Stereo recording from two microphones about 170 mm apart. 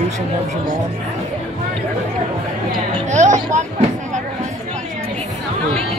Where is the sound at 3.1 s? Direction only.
45° right (ahead or behind).